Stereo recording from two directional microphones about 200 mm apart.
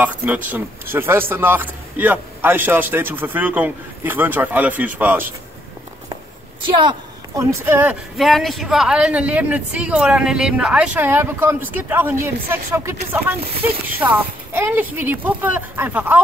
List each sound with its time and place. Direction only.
0.0 s speech: 10° right (ahead or behind)
6.6 s a woman's voice: 25° right (ahead or behind)
7.6 s speech: 10° right (ahead or behind)